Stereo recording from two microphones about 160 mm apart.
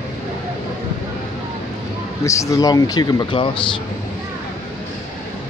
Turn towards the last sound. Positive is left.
turn(degrees=30)  # may be behind; listen again after turning